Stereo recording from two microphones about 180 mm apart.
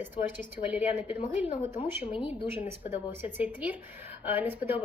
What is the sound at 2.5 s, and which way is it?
A woman's voice, 10° right (ahead or behind).